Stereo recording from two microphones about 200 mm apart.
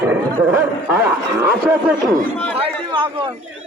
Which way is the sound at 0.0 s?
10° right (ahead or behind).